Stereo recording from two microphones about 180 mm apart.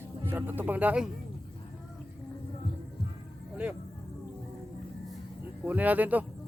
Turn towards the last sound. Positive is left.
turn(degrees=-10)  # may be behind; listen again after turning